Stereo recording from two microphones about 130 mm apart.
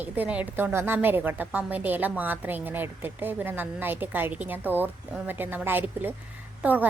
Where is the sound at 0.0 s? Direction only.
10° right (ahead or behind).